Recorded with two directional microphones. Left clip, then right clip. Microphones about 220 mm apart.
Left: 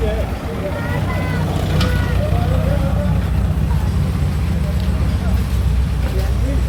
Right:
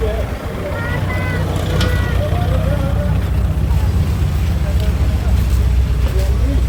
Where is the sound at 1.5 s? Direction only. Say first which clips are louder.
Right 1 dB; 25° right (ahead or behind).